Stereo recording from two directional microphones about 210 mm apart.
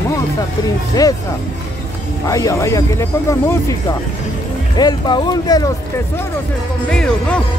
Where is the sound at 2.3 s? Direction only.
15° left (ahead or behind).